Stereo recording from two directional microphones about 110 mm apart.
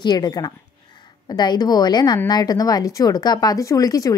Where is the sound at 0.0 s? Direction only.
40° left (ahead or behind).